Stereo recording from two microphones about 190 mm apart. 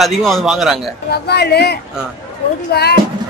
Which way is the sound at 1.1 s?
60° left (ahead or behind).